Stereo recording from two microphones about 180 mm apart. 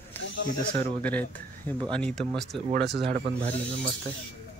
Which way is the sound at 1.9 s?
5° left (ahead or behind).